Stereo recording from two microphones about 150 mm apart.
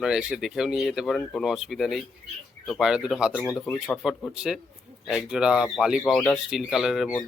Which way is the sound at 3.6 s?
10° left (ahead or behind).